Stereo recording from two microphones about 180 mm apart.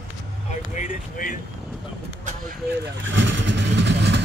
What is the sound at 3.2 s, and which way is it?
Vehicle, 85° right.